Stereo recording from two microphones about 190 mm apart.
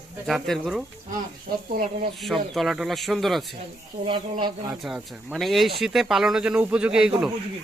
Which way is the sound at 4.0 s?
25° right (ahead or behind).